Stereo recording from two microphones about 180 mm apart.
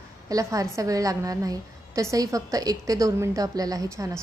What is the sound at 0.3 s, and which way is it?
A woman's voice, 20° right (ahead or behind).